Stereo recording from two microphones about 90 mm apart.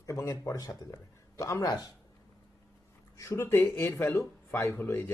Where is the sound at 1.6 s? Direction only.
45° left (ahead or behind).